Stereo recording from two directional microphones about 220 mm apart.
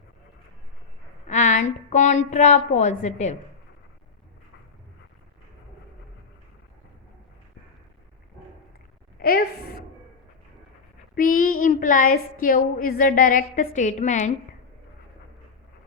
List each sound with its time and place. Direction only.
1.3 s speech: 35° left (ahead or behind)
9.2 s a sound: 45° left (ahead or behind)
11.1 s speech: 40° left (ahead or behind)